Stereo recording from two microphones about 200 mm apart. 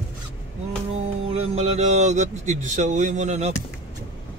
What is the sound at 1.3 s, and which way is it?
Speech, 30° right (ahead or behind).